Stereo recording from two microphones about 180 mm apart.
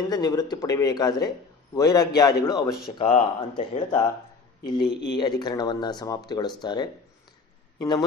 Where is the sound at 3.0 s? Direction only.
30° left (ahead or behind).